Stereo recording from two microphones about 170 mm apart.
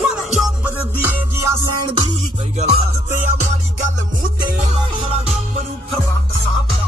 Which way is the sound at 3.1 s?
45° right (ahead or behind).